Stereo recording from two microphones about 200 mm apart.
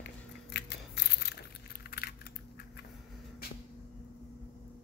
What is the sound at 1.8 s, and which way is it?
Typing, 50° left (ahead or behind).